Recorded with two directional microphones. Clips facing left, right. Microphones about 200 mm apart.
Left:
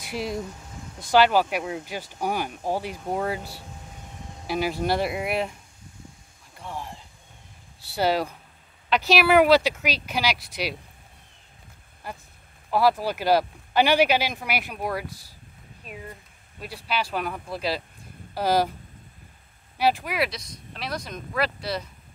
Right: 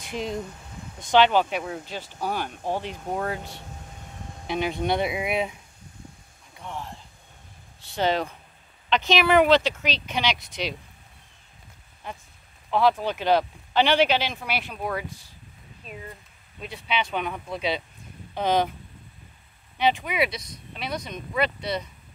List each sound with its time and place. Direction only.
0.0 s speech: 10° left (ahead or behind)
7.9 s speech: 10° left (ahead or behind)
12.7 s speech: 10° left (ahead or behind)
15.0 s speech: 40° left (ahead or behind)
16.5 s speech: 5° left (ahead or behind)
19.8 s speech: 5° left (ahead or behind)